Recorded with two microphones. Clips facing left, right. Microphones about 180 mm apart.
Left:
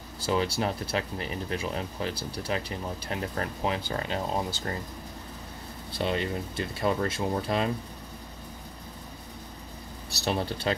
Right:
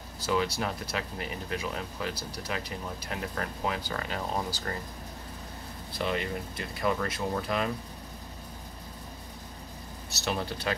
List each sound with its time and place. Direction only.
0.2 s speech: 30° left (ahead or behind)
5.9 s speech: 30° left (ahead or behind)
10.1 s speech: 30° left (ahead or behind)